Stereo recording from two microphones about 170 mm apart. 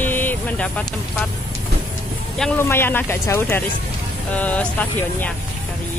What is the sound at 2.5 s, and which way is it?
Speech, 15° left (ahead or behind).